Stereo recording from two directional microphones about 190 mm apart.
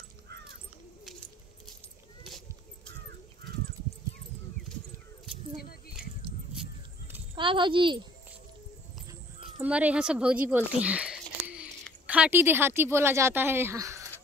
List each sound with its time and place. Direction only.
7.3 s a child's voice: 25° right (ahead or behind)
9.6 s speech: 5° right (ahead or behind)